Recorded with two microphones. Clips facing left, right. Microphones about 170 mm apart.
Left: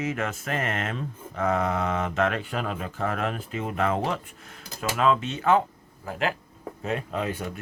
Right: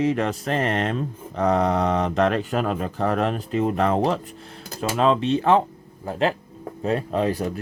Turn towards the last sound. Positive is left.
turn(degrees=-35)  # may be behind; listen again after turning